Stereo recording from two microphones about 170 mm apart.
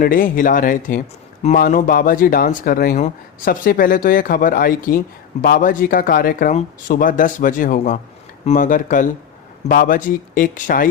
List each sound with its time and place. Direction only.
0.0 s speech: 55° left (ahead or behind)
6.5 s speech: 40° left (ahead or behind)
6.9 s speech: 55° left (ahead or behind)